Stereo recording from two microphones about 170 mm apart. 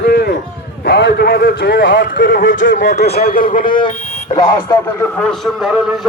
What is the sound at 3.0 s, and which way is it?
Speech, 70° left (ahead or behind).